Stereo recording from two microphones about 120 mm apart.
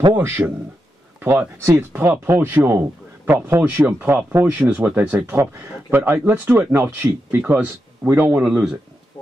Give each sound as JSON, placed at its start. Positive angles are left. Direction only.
{"t": 0.1, "sound": "speech", "side_deg": -20}
{"t": 8.5, "sound": "speech", "side_deg": -5}